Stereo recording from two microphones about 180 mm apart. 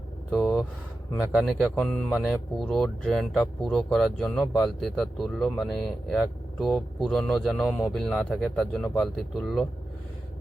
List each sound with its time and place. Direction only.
0.3 s vehicle: centre (ahead or behind)
1.1 s speech: centre (ahead or behind)